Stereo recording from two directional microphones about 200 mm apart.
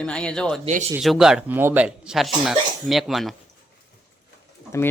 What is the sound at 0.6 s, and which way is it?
Speech, 35° right (ahead or behind).